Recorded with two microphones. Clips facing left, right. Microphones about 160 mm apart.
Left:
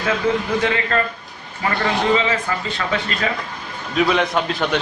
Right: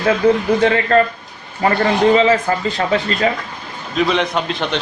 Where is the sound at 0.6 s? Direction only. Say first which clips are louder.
Right 7 dB; 35° right (ahead or behind).